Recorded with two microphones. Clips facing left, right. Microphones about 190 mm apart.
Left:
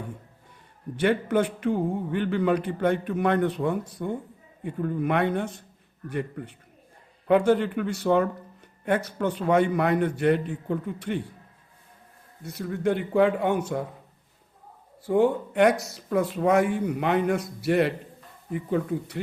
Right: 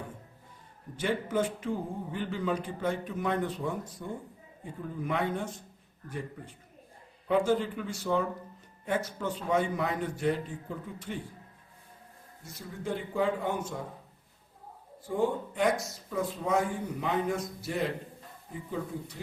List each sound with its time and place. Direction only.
0.9 s speech: 65° left (ahead or behind)
12.4 s speech: 65° left (ahead or behind)
15.0 s speech: 70° left (ahead or behind)